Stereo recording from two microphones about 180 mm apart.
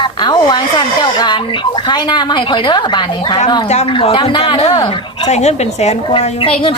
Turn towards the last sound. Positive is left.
turn(degrees=30)  # may be behind; listen again after turning